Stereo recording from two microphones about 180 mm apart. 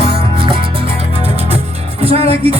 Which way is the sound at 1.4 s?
35° right (ahead or behind).